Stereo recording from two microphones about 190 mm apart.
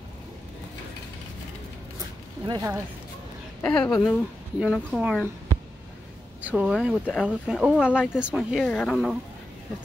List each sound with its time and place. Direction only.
2.4 s speech: 25° right (ahead or behind)
3.6 s speech: 5° left (ahead or behind)
6.5 s speech: 5° right (ahead or behind)